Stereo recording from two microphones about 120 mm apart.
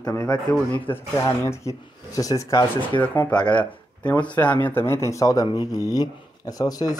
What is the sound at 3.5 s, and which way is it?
Speech, 10° left (ahead or behind).